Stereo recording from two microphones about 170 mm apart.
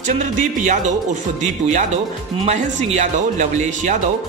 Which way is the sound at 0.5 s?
45° right (ahead or behind).